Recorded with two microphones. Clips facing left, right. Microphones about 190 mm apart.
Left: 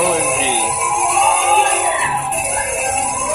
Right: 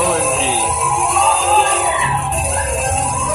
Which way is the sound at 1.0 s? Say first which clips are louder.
Left 1 dB; 40° right (ahead or behind).